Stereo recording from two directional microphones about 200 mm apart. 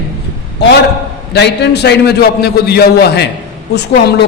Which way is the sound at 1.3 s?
55° left (ahead or behind).